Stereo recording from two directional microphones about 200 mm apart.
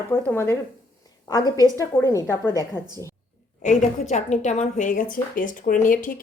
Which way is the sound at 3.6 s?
35° left (ahead or behind).